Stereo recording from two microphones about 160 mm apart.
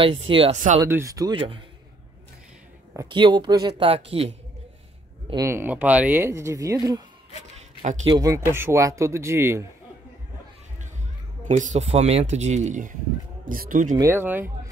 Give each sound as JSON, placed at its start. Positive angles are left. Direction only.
{"t": 0.0, "sound": "speech", "side_deg": -35}
{"t": 0.7, "sound": "speech", "side_deg": -15}
{"t": 1.3, "sound": "speech", "side_deg": -35}
{"t": 3.1, "sound": "speech", "side_deg": -30}
{"t": 5.3, "sound": "speech", "side_deg": -20}
{"t": 8.1, "sound": "speech", "side_deg": -20}
{"t": 11.4, "sound": "speech", "side_deg": -50}
{"t": 13.9, "sound": "speech", "side_deg": -15}